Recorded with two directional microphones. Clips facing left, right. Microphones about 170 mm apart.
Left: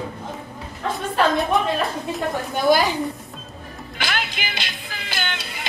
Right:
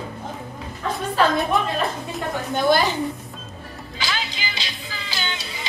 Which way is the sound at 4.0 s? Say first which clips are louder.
Left 2 dB; 55° left (ahead or behind).